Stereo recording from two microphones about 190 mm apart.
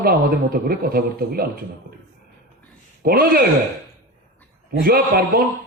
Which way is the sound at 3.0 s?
50° right (ahead or behind).